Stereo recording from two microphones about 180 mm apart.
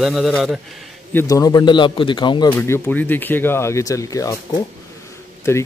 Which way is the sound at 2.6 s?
10° left (ahead or behind).